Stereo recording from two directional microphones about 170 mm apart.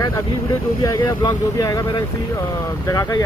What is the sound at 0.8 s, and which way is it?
Speech, 20° left (ahead or behind).